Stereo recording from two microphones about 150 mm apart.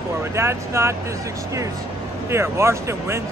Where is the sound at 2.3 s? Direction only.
15° right (ahead or behind).